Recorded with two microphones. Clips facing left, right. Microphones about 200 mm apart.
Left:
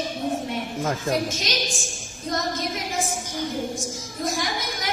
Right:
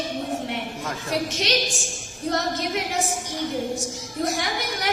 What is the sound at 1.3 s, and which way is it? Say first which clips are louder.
Speech: right 4 dB; 65° right (ahead or behind).